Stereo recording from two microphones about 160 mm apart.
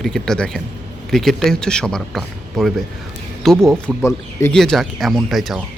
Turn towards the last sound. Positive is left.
turn(degrees=0)  # may be behind; listen again after turning